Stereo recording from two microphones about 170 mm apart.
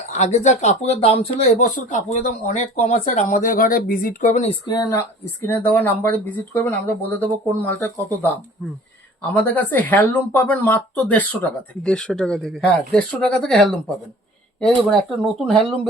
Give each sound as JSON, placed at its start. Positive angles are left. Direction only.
{"t": 0.1, "sound": "speech", "side_deg": 45}
{"t": 4.4, "sound": "speech", "side_deg": 25}